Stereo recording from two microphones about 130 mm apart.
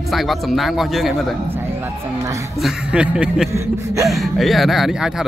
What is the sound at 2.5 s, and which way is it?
Speech, 5° right (ahead or behind).